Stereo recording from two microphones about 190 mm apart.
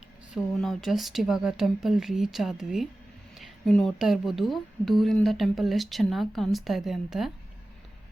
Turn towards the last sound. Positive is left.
turn(degrees=0)  # may be behind; listen again after turning